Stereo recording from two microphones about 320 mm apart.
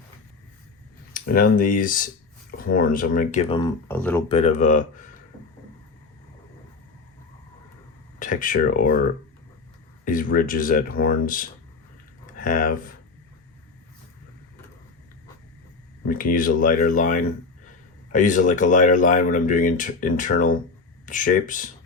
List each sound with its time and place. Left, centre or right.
1.1 s speech: left; by 4.2 s centre
4.3 s speech: centre
8.2 s speech: left
10.1 s speech: left
16.0 s speech: left